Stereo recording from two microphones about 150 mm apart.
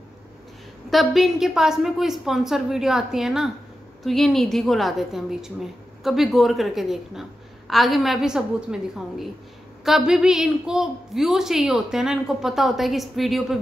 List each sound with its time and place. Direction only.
0.8 s a woman's voice: centre (ahead or behind)